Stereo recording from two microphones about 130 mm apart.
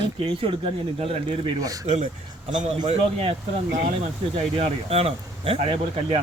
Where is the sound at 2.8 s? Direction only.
50° right (ahead or behind).